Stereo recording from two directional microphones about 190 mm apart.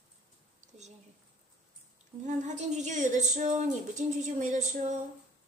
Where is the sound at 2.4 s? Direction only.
40° right (ahead or behind).